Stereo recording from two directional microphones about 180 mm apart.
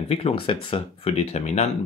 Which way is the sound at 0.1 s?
30° left (ahead or behind).